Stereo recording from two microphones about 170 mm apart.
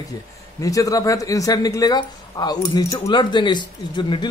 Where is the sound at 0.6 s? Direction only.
20° left (ahead or behind).